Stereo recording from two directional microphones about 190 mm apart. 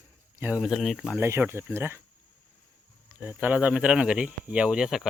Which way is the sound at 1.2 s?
10° right (ahead or behind).